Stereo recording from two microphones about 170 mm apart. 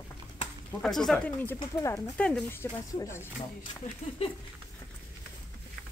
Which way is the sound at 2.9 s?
15° left (ahead or behind).